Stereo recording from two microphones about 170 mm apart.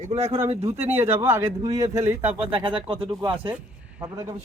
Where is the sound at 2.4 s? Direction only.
30° right (ahead or behind).